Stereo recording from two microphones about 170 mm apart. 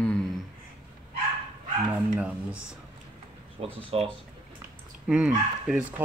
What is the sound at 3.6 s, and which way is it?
Speech, 35° right (ahead or behind).